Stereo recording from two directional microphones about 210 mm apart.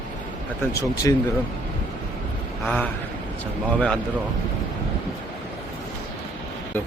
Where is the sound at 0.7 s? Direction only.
15° left (ahead or behind).